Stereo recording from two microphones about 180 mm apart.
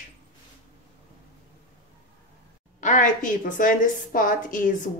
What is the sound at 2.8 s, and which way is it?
A woman's voice, 45° left (ahead or behind).